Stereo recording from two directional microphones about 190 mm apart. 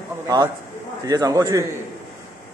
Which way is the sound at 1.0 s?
20° right (ahead or behind).